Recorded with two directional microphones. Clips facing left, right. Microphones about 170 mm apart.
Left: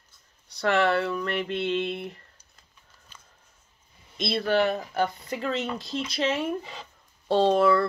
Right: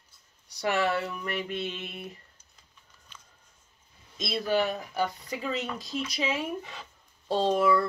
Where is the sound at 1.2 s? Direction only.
10° right (ahead or behind).